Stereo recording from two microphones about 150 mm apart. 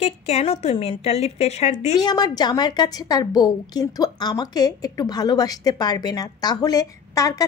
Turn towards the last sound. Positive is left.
turn(degrees=20)  # may be behind; listen again after turning